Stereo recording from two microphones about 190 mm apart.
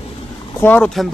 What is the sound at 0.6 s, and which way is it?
Speech, 5° left (ahead or behind).